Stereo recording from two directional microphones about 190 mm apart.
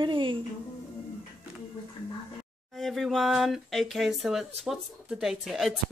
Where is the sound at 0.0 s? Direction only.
25° right (ahead or behind).